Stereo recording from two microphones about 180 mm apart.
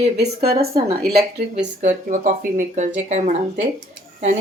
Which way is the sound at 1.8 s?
45° right (ahead or behind).